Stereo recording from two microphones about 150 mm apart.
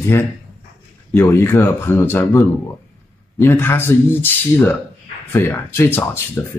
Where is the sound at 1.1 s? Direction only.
15° left (ahead or behind).